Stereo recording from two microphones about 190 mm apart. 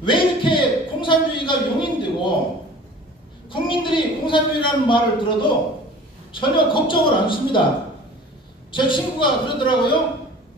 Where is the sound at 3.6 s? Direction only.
25° left (ahead or behind).